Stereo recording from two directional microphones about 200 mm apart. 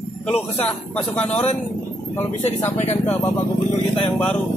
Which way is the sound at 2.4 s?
35° left (ahead or behind).